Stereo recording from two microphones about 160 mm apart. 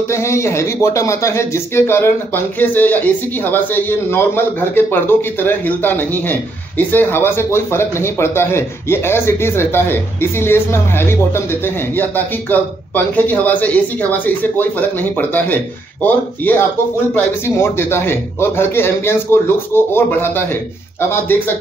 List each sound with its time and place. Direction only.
0.1 s speech: 15° left (ahead or behind)